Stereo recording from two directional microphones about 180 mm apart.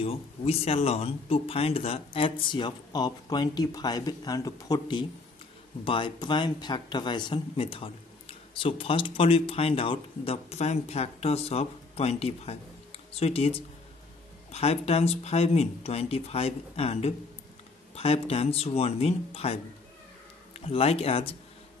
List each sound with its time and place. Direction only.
0.0 s speech: 35° left (ahead or behind)